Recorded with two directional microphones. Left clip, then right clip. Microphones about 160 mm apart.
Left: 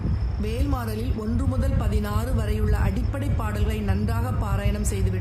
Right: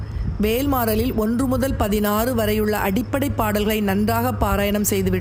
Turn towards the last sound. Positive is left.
turn(degrees=-50)  # may be behind; listen again after turning